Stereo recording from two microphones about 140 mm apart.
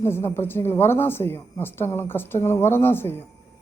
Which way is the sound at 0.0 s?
20° left (ahead or behind).